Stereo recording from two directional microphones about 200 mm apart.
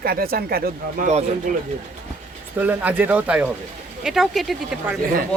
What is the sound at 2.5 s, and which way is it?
Speech, 10° right (ahead or behind).